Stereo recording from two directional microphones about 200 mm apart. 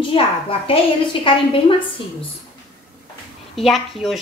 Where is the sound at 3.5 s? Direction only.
Centre (ahead or behind).